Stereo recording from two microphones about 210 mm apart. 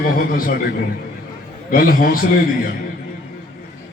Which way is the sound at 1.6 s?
45° left (ahead or behind).